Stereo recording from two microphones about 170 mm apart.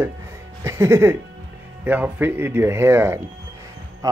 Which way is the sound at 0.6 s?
15° right (ahead or behind).